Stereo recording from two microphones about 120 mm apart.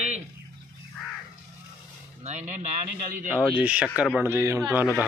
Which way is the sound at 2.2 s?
75° right (ahead or behind).